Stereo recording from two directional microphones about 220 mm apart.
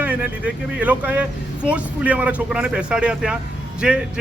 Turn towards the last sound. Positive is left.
turn(degrees=-5)  # may be behind; listen again after turning